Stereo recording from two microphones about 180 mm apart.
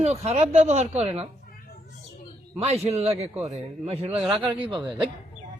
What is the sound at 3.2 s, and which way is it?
Speech, 10° right (ahead or behind).